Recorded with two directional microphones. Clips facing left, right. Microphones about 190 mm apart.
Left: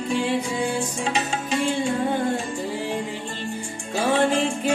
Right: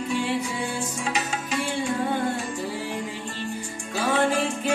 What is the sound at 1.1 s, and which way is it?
Music, 30° left (ahead or behind).